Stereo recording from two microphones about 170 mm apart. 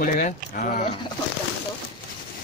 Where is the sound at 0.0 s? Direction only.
55° left (ahead or behind).